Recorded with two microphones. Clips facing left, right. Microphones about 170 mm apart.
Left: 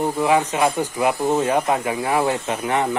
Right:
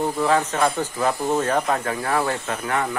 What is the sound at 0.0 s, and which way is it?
Speech, 15° left (ahead or behind).